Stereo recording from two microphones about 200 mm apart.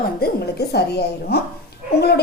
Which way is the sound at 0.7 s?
55° left (ahead or behind).